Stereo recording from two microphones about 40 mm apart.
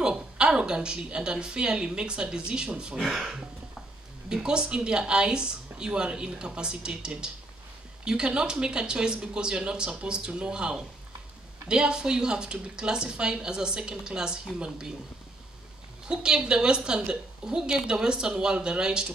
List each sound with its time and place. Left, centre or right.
0.0 s a woman's voice: centre
4.3 s a woman's voice: centre
16.1 s a woman's voice: centre